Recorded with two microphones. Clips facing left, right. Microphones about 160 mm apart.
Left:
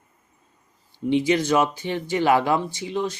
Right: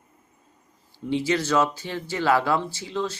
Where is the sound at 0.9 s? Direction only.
15° left (ahead or behind).